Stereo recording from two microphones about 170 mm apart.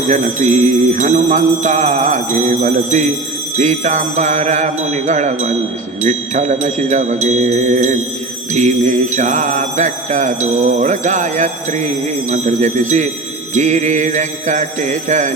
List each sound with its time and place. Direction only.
0.1 s mantra: 45° right (ahead or behind)